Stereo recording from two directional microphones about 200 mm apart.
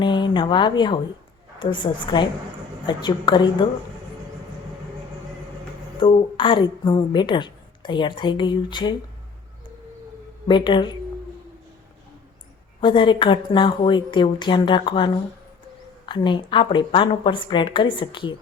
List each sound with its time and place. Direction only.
0.0 s a woman's voice: 25° left (ahead or behind)
6.0 s a woman's voice: 25° left (ahead or behind)
10.5 s a woman's voice: 25° left (ahead or behind)
12.8 s a woman's voice: 25° left (ahead or behind)